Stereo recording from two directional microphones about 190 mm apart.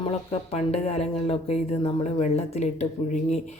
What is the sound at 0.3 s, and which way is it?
Speech, 35° left (ahead or behind).